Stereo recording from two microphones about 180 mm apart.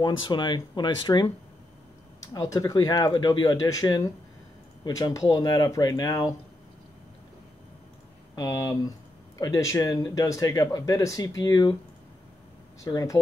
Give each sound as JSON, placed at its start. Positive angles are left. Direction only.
{"t": 0.2, "sound": "speech", "side_deg": 25}
{"t": 2.3, "sound": "speech", "side_deg": 20}
{"t": 8.4, "sound": "speech", "side_deg": 20}
{"t": 12.8, "sound": "speech", "side_deg": 20}